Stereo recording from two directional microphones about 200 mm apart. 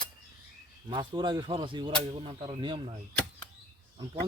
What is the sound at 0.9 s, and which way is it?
Speech, 20° right (ahead or behind).